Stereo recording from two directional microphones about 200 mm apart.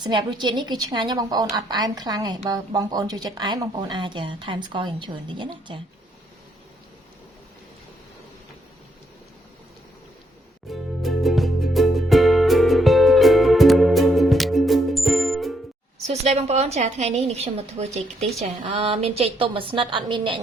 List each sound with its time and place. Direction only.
0.0 s speech: 20° right (ahead or behind)
10.7 s music: centre (ahead or behind)
16.0 s a woman's voice: 30° right (ahead or behind)